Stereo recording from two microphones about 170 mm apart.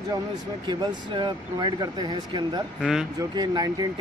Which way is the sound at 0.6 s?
25° right (ahead or behind).